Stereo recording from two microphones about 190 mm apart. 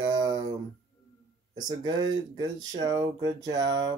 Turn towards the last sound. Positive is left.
turn(degrees=-20)  # may be behind; listen again after turning